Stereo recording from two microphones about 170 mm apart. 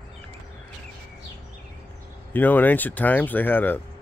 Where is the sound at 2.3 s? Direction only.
10° left (ahead or behind).